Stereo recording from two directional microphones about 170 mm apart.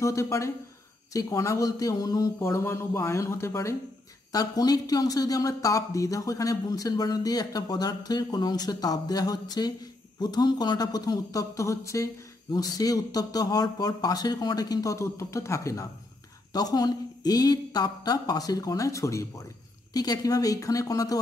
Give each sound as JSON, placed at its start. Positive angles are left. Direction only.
{"t": 0.0, "sound": "speech", "side_deg": 15}